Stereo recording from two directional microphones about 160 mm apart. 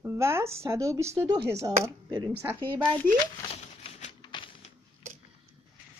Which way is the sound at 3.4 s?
40° left (ahead or behind).